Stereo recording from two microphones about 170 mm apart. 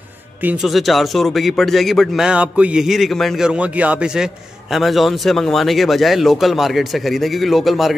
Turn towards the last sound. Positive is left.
turn(degrees=0)  # may be behind; listen again after turning